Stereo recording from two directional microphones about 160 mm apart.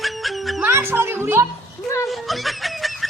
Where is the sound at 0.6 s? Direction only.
15° right (ahead or behind).